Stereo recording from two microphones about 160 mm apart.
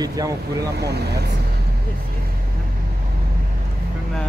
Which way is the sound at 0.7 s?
90° right.